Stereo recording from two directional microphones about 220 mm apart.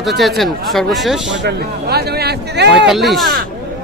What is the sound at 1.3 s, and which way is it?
Speech, 50° right (ahead or behind).